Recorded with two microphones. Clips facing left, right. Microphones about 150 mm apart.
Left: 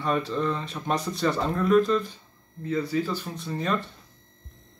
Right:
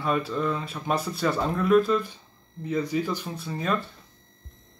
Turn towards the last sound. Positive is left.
turn(degrees=-5)  # may be behind; listen again after turning